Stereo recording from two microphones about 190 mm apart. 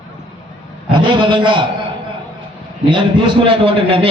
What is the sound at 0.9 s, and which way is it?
Speech, 25° right (ahead or behind).